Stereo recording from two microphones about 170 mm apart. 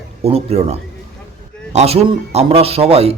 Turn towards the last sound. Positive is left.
turn(degrees=-35)  # may be behind; listen again after turning